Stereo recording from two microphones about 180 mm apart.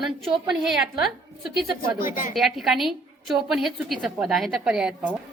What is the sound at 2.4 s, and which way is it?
A woman's voice, centre (ahead or behind).